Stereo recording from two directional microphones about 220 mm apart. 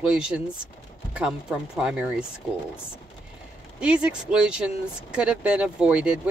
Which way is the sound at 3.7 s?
5° right (ahead or behind).